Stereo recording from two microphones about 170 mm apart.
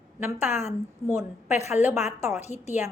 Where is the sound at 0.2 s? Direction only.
15° right (ahead or behind).